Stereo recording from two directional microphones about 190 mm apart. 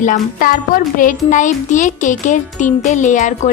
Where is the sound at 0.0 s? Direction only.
45° left (ahead or behind).